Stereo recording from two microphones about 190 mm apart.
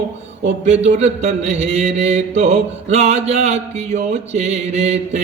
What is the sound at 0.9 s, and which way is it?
Mantra, 35° right (ahead or behind).